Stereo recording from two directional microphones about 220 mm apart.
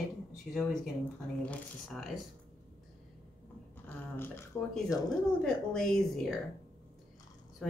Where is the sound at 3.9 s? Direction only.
10° left (ahead or behind).